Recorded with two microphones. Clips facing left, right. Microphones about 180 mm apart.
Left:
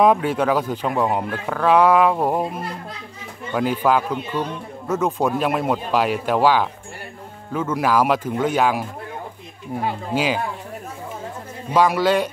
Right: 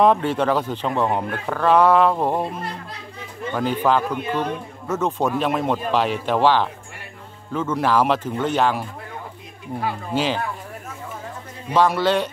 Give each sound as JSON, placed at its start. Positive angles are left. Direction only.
{"t": 0.0, "sound": "a man's voice", "side_deg": 10}
{"t": 10.1, "sound": "a man's voice", "side_deg": 10}
{"t": 11.7, "sound": "a man's voice", "side_deg": 10}